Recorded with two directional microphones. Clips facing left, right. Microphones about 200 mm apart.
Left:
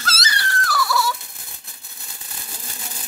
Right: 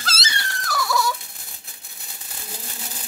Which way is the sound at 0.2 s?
25° right (ahead or behind).